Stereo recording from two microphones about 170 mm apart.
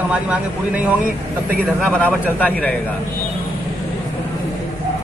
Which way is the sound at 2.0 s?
10° left (ahead or behind).